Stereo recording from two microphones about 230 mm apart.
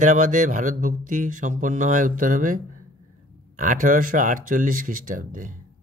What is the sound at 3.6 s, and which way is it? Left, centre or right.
Speech, right.